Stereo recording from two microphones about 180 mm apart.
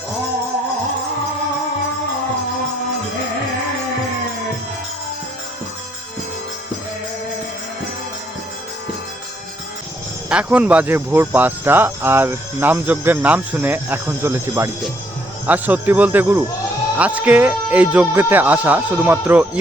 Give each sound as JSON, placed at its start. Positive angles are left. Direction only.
{"t": 10.2, "sound": "speech", "side_deg": -5}